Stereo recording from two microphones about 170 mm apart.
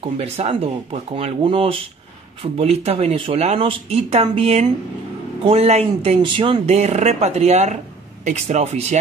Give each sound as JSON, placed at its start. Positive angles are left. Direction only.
{"t": 0.0, "sound": "speech", "side_deg": -35}